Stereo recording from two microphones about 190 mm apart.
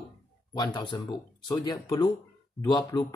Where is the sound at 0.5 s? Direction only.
20° left (ahead or behind).